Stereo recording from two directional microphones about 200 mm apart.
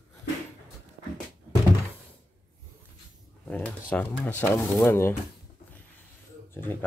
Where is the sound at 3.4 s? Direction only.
5° left (ahead or behind).